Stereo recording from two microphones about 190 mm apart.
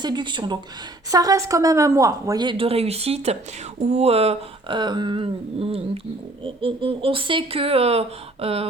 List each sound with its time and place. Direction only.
0.0 s speech: 25° right (ahead or behind)